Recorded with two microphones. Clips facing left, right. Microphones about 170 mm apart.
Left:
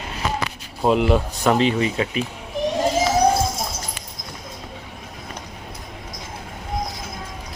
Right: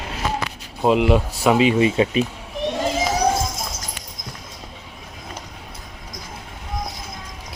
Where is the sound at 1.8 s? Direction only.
25° right (ahead or behind).